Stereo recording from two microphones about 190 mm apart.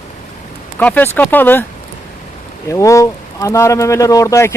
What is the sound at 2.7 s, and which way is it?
Speech, 15° left (ahead or behind).